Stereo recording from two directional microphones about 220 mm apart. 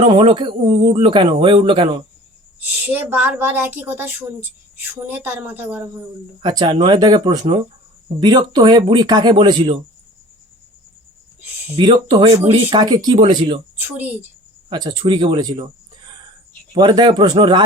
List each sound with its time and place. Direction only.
0.0 s speech: 20° right (ahead or behind)
2.6 s a woman's voice: 5° right (ahead or behind)
5.1 s a woman's voice: 5° right (ahead or behind)
6.4 s speech: 20° right (ahead or behind)
11.8 s speech: 20° right (ahead or behind)
13.8 s a woman's voice: 10° right (ahead or behind)
14.7 s speech: 20° right (ahead or behind)
16.7 s speech: 20° right (ahead or behind)